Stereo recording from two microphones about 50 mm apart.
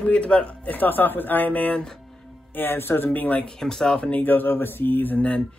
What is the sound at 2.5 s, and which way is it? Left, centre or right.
Speech, left.